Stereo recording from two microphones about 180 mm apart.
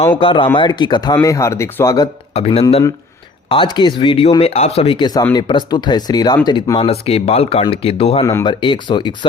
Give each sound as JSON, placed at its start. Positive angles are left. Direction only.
{"t": 0.2, "sound": "speech", "side_deg": 30}
{"t": 2.3, "sound": "speech", "side_deg": 35}
{"t": 8.2, "sound": "speech", "side_deg": 20}